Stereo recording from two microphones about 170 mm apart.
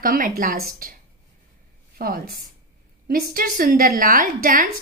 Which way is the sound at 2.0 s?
60° right (ahead or behind).